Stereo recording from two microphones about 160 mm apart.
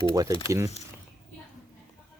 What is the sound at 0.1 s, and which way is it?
Speech, 20° right (ahead or behind).